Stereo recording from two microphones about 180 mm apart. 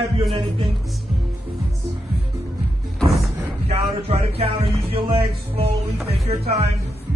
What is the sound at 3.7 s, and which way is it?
Speech, 35° right (ahead or behind).